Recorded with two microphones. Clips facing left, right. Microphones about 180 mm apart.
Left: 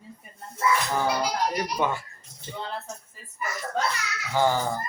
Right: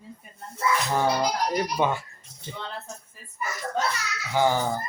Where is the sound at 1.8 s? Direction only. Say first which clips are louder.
Right 2 dB; 15° right (ahead or behind).